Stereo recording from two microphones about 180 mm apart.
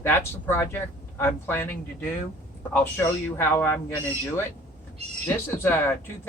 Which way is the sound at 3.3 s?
10° left (ahead or behind).